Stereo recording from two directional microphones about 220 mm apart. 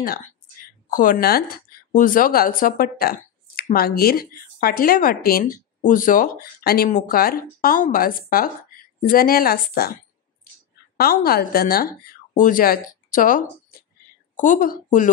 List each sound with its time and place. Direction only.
0.8 s speech: 40° left (ahead or behind)
11.0 s a woman's voice: 45° left (ahead or behind)